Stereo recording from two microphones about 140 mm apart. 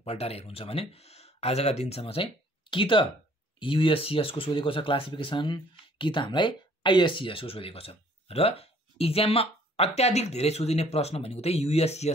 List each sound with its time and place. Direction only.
0.0 s speech: 45° left (ahead or behind)